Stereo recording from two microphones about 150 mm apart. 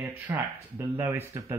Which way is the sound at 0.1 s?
15° right (ahead or behind).